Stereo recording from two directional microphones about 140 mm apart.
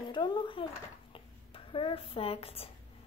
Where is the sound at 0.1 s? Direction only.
35° left (ahead or behind).